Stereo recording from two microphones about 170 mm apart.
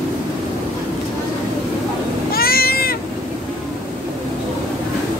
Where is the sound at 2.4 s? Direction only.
60° left (ahead or behind).